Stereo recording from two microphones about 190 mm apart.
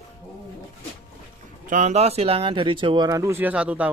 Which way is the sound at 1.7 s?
40° right (ahead or behind).